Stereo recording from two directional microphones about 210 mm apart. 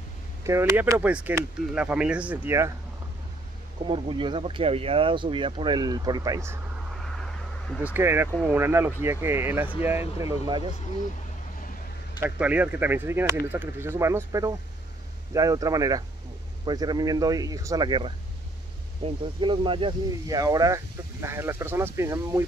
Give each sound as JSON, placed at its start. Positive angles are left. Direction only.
{"t": 0.4, "sound": "speech", "side_deg": -15}
{"t": 3.8, "sound": "speech", "side_deg": -25}
{"t": 7.8, "sound": "speech", "side_deg": -10}
{"t": 12.2, "sound": "speech", "side_deg": -5}